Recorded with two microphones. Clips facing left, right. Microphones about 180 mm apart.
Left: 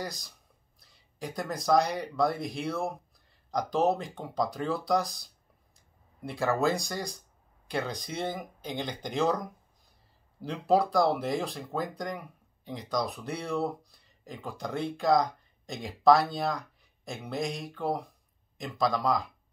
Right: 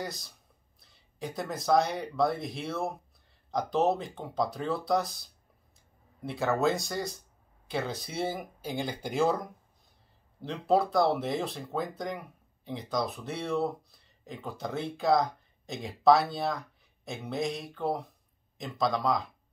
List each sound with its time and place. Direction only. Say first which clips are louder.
0.0 s speech: even; centre (ahead or behind)
10.4 s speech: left 1 dB; centre (ahead or behind)